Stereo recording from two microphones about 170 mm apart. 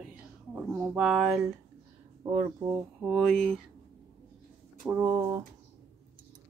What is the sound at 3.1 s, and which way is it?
Speech, 5° left (ahead or behind).